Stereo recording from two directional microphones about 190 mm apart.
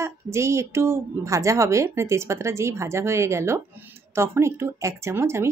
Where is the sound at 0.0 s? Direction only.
15° right (ahead or behind).